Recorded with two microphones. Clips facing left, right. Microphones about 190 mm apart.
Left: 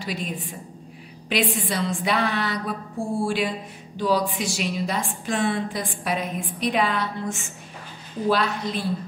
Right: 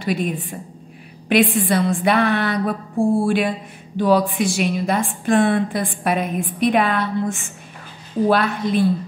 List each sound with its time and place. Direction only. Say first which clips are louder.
0.0 s a woman's voice: right 9 dB; 55° right (ahead or behind)
1.3 s a woman's voice: right 8 dB; 55° right (ahead or behind)